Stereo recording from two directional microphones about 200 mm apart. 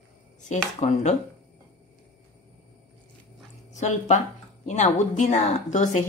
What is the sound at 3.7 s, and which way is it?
Speech, 35° left (ahead or behind).